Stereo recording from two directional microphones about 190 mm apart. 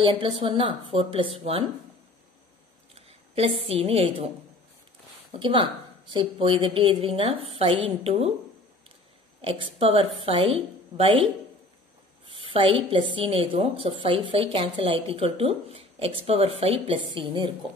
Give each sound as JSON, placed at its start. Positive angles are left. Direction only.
{"t": 0.0, "sound": "a woman's voice", "side_deg": -25}
{"t": 2.9, "sound": "a woman's voice", "side_deg": -30}
{"t": 5.4, "sound": "a woman's voice", "side_deg": -25}
{"t": 9.4, "sound": "a woman's voice", "side_deg": -30}
{"t": 12.3, "sound": "a woman's voice", "side_deg": -30}